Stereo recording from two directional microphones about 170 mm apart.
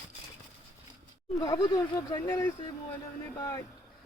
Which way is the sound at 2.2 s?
15° left (ahead or behind).